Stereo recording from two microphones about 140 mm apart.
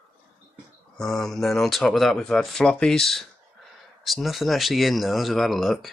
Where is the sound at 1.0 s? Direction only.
5° left (ahead or behind).